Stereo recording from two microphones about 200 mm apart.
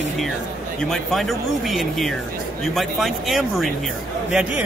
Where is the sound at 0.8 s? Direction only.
Centre (ahead or behind).